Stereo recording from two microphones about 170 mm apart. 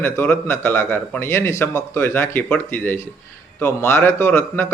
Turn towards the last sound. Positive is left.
turn(degrees=10)  # may be behind; listen again after turning